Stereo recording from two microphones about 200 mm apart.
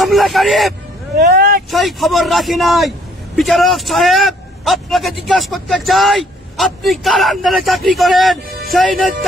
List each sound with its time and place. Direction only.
0.0 s a man's voice: centre (ahead or behind)
1.1 s speech: 50° right (ahead or behind)
1.7 s a man's voice: centre (ahead or behind)